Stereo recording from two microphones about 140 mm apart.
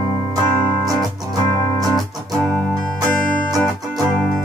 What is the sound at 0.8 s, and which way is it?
Music, 25° right (ahead or behind).